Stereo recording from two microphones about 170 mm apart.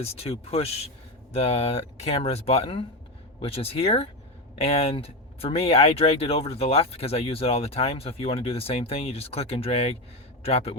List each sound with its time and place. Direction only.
0.0 s speech: 35° left (ahead or behind)